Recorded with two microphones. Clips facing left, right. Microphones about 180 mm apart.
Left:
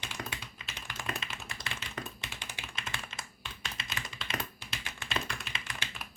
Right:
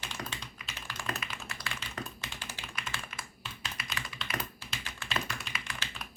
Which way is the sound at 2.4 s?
20° left (ahead or behind).